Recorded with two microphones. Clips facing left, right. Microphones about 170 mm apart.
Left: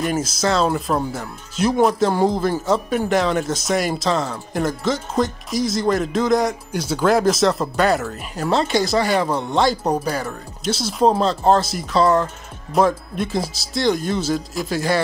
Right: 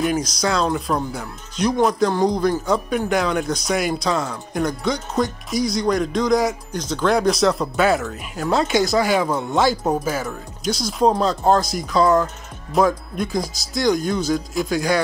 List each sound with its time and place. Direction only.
0.0 s speech: 5° left (ahead or behind)